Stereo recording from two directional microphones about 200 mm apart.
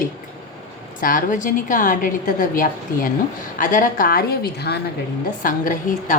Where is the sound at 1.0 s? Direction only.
45° left (ahead or behind).